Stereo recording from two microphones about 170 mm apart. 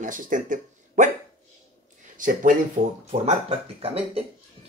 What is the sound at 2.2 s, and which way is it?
Speech, 50° right (ahead or behind).